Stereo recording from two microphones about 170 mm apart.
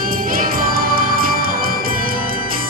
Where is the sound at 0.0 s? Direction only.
55° right (ahead or behind).